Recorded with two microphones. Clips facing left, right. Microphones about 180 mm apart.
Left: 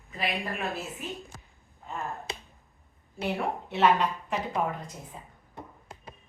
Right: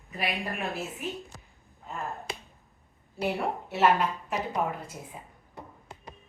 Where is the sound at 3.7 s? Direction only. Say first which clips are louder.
Even; 5° right (ahead or behind).